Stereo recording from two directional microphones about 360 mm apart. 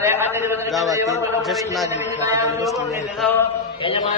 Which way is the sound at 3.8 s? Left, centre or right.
Centre.